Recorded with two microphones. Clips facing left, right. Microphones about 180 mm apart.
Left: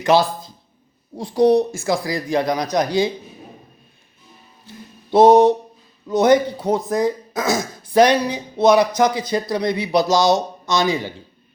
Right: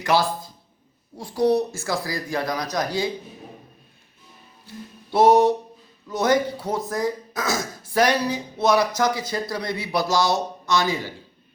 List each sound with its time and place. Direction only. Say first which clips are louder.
0.0 s speech: left 5 dB; 20° left (ahead or behind)
5.1 s speech: left 5 dB; 20° left (ahead or behind)